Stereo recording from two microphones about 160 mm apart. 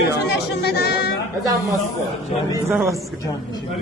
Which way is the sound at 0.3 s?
85° left.